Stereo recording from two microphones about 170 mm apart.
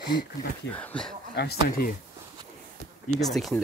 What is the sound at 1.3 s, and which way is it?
Speech, 70° left (ahead or behind).